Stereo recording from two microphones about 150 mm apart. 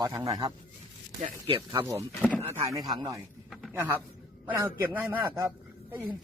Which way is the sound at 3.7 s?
15° right (ahead or behind).